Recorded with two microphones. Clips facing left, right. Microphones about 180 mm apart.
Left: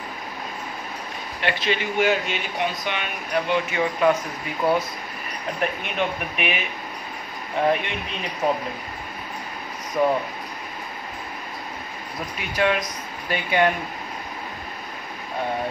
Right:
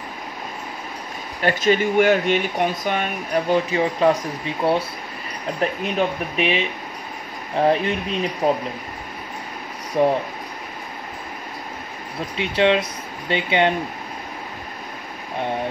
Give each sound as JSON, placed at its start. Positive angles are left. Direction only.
{"t": 1.4, "sound": "speech", "side_deg": -45}
{"t": 9.9, "sound": "speech", "side_deg": -30}
{"t": 12.4, "sound": "speech", "side_deg": -25}